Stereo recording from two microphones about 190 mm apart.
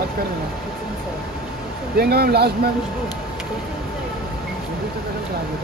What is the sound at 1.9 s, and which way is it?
Speech, 55° right (ahead or behind).